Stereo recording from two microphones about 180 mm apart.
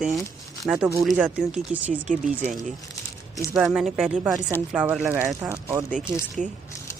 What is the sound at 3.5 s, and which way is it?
Speech, centre (ahead or behind).